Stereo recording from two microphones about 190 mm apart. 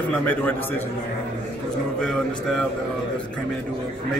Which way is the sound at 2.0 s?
5° left (ahead or behind).